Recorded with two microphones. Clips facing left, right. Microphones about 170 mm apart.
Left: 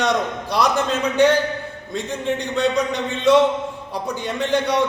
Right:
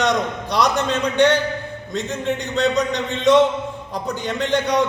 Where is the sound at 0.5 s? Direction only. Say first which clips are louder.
Even; centre (ahead or behind).